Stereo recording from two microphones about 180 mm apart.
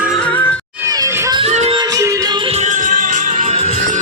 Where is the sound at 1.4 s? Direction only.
35° right (ahead or behind).